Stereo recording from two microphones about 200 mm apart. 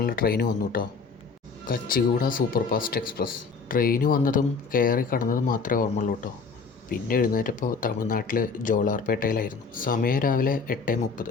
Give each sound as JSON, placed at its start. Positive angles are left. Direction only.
{"t": 0.0, "sound": "speech", "side_deg": 45}